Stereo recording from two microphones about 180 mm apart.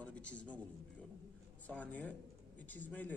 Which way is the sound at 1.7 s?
10° left (ahead or behind).